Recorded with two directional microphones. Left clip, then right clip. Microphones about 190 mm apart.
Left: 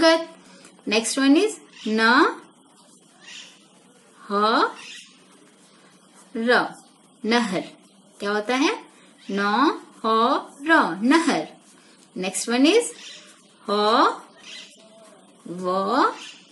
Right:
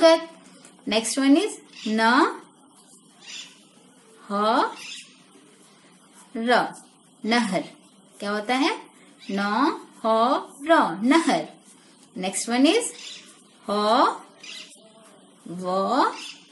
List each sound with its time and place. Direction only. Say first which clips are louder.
0.8 s speech: left 1 dB; 20° left (ahead or behind)
4.3 s speech: left 2 dB; 20° left (ahead or behind)
6.3 s speech: left 1 dB; 20° left (ahead or behind)
15.6 s speech: left 1 dB; 20° left (ahead or behind)